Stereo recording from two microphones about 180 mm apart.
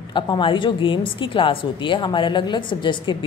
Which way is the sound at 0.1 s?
25° left (ahead or behind).